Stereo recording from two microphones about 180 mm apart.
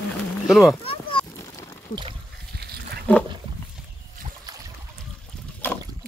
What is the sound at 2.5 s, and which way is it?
Goat, 65° right (ahead or behind).